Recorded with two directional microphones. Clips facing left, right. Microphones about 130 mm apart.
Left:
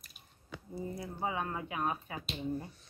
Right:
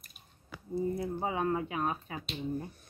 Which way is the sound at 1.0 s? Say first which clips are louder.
Right 4 dB; 30° right (ahead or behind).